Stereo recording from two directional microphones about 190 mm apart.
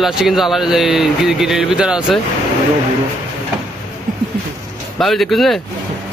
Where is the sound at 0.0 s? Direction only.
Centre (ahead or behind).